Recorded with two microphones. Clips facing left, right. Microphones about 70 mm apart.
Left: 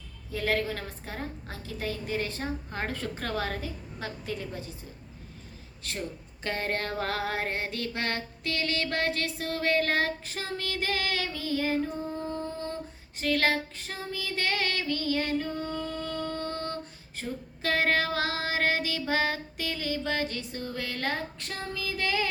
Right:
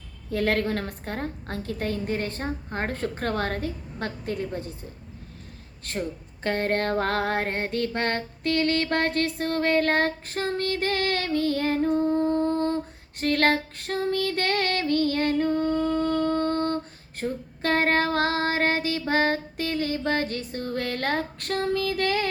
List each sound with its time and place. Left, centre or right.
0.3 s a woman's voice: right
2.6 s female singing: right
5.8 s female singing: right
6.4 s music: right
17.2 s female singing: right